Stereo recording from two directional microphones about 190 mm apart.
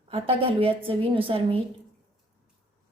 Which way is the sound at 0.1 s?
30° right (ahead or behind).